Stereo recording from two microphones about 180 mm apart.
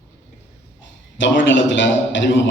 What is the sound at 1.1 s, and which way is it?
A man's voice, 90° left.